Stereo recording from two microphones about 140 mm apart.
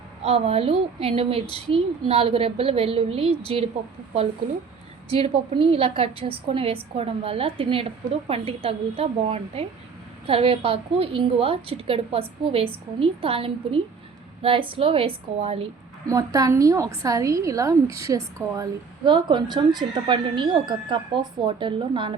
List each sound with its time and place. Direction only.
0.2 s a woman's voice: 45° right (ahead or behind)
5.0 s a woman's voice: 45° right (ahead or behind)
16.0 s a woman's voice: 25° right (ahead or behind)
19.0 s speech: 35° right (ahead or behind)